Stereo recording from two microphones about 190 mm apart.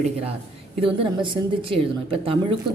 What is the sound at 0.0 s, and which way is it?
A woman's voice, 30° right (ahead or behind).